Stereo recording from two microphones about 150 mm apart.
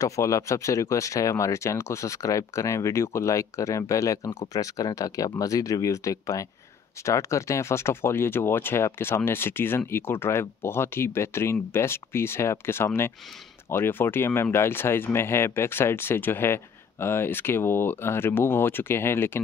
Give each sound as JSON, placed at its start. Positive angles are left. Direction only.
{"t": 0.0, "sound": "speech", "side_deg": 20}